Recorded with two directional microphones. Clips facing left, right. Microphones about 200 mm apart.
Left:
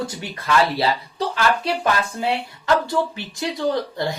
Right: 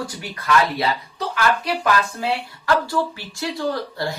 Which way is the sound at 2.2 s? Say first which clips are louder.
Left 1 dB; 20° left (ahead or behind).